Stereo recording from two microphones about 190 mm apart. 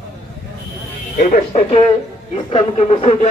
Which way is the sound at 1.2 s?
40° left (ahead or behind).